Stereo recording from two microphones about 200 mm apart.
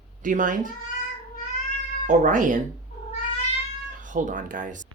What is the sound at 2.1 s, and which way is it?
Speech, 40° right (ahead or behind).